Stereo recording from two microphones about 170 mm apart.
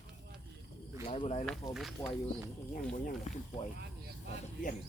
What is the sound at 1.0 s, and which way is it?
Speech, 35° left (ahead or behind).